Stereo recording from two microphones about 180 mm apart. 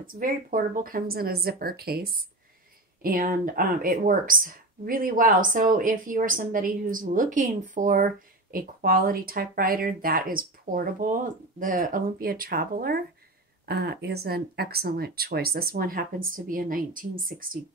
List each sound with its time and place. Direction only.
0.0 s speech: 50° right (ahead or behind)